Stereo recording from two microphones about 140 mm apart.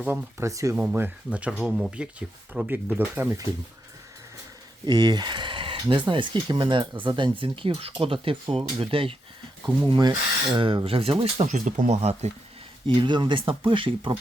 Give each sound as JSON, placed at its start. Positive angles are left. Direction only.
{"t": 0.0, "sound": "speech", "side_deg": -15}
{"t": 4.9, "sound": "speech", "side_deg": -30}
{"t": 9.8, "sound": "speech", "side_deg": -30}
{"t": 11.4, "sound": "speech", "side_deg": -60}
{"t": 12.9, "sound": "speech", "side_deg": -35}